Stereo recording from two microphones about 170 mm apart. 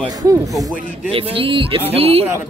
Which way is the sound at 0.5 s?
Centre (ahead or behind).